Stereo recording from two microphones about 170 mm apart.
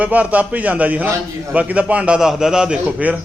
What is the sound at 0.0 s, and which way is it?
A man's voice, 10° right (ahead or behind).